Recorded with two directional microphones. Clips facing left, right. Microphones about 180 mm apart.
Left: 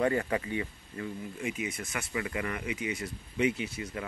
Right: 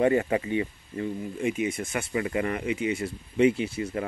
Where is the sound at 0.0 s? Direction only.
20° right (ahead or behind).